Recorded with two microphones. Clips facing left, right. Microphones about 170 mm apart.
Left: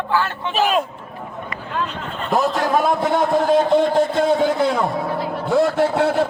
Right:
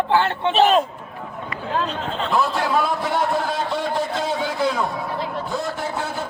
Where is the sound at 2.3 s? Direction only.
45° left (ahead or behind); by 6.2 s 70° left (ahead or behind).